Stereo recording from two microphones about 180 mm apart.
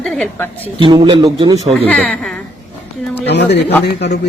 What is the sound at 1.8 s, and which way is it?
Speech, 10° left (ahead or behind).